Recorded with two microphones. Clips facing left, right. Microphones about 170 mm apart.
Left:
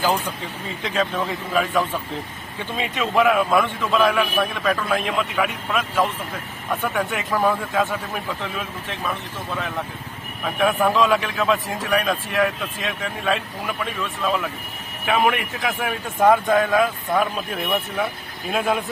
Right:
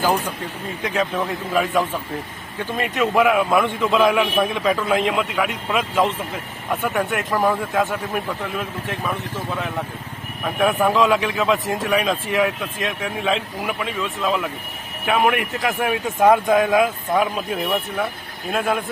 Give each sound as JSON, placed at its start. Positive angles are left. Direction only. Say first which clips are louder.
{"t": 0.0, "sound": "speech", "louder": "right 2 dB", "side_deg": -10}
{"t": 2.6, "sound": "speech", "louder": "right 4 dB", "side_deg": 0}
{"t": 16.6, "sound": "speech", "louder": "right 2 dB", "side_deg": -15}
{"t": 17.2, "sound": "speech", "louder": "right 2 dB", "side_deg": -5}